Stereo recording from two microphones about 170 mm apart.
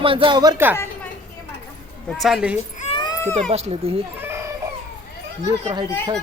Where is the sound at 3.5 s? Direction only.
35° right (ahead or behind).